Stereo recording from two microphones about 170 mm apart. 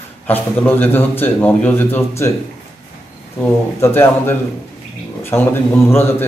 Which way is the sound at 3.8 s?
15° left (ahead or behind).